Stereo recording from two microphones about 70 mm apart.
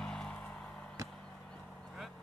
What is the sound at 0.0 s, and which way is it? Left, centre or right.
Music, centre.